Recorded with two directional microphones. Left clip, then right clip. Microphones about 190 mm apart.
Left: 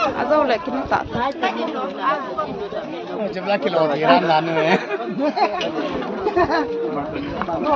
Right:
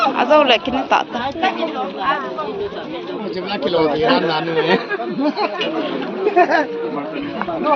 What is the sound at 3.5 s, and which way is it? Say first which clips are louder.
Speech: right 2 dB; 45° left (ahead or behind).